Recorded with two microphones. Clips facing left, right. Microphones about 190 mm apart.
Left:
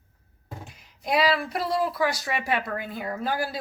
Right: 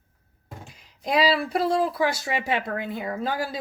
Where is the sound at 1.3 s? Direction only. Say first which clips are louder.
Right 3 dB; 30° right (ahead or behind).